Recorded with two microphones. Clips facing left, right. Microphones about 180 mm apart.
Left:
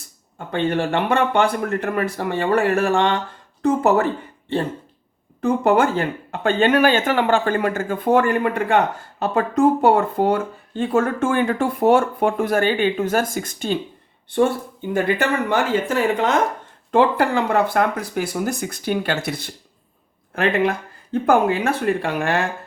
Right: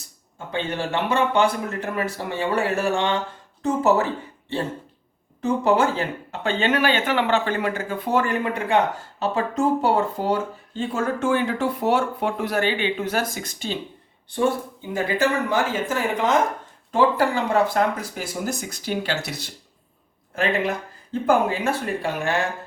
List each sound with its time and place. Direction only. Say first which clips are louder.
0.3 s speech: left 6 dB; 55° left (ahead or behind)
5.4 s speech: left 3 dB; 55° left (ahead or behind)
14.9 s speech: left 2 dB; 60° left (ahead or behind)